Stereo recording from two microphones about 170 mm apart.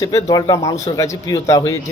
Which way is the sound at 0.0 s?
20° left (ahead or behind).